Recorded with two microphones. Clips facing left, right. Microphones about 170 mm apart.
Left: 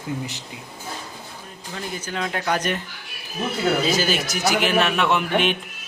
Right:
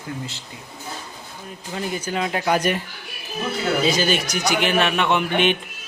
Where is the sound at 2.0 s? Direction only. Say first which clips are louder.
Right 2 dB; 15° right (ahead or behind).